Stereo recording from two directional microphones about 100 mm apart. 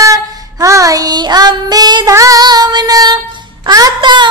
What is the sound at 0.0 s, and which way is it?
Child singing, 35° right (ahead or behind).